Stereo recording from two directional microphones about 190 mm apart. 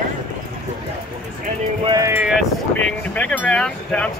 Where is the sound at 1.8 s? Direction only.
20° right (ahead or behind).